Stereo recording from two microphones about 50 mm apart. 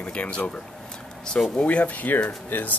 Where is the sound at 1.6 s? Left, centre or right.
Left.